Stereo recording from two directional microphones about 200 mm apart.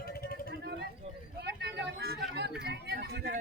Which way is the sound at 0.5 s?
55° right (ahead or behind).